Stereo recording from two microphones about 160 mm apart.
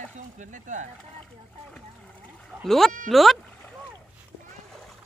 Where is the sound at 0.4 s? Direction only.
50° right (ahead or behind).